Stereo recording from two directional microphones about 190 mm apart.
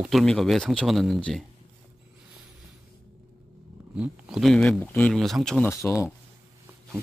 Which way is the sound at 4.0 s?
Centre (ahead or behind).